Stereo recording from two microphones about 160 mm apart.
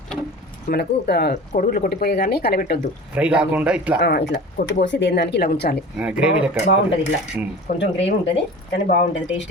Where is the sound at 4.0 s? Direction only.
90° left; by 5.7 s 70° left (ahead or behind).